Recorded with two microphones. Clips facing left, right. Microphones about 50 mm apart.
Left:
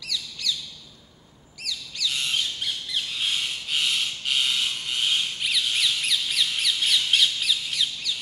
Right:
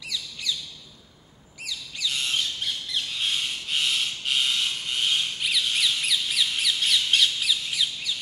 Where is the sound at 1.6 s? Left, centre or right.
Centre.